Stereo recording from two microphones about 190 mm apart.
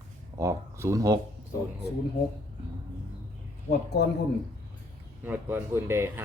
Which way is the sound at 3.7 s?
60° left (ahead or behind).